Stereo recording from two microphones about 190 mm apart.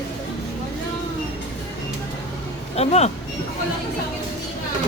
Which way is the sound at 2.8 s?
35° left (ahead or behind).